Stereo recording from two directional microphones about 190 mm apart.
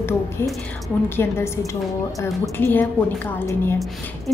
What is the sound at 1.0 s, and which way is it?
A woman's voice, 10° left (ahead or behind).